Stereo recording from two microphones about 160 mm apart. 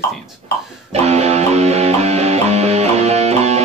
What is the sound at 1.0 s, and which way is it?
Music, 40° right (ahead or behind).